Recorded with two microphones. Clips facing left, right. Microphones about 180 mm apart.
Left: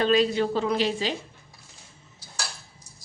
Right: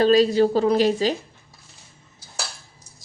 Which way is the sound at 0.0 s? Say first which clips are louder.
Right 6 dB; 35° right (ahead or behind).